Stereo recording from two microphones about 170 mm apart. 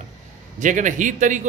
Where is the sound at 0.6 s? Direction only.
50° right (ahead or behind).